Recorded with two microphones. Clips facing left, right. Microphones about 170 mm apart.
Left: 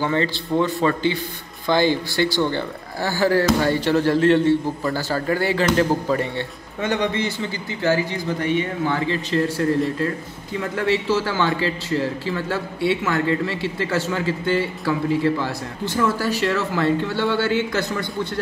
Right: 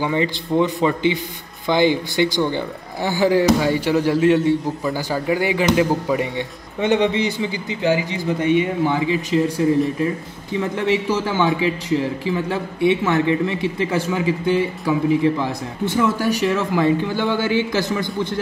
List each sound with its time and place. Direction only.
0.0 s speech: 15° right (ahead or behind)